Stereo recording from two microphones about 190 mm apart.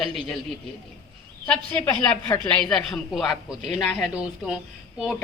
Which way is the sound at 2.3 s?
25° left (ahead or behind).